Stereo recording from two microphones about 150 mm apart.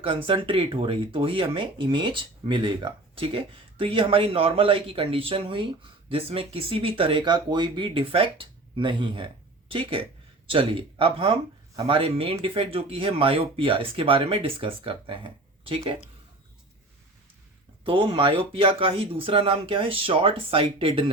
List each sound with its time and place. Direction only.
0.0 s speech: 35° right (ahead or behind)
17.8 s speech: 35° right (ahead or behind)